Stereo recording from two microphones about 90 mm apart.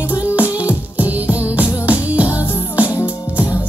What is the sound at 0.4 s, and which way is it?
Music, 15° right (ahead or behind).